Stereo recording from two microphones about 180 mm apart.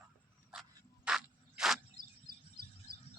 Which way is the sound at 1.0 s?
5° right (ahead or behind).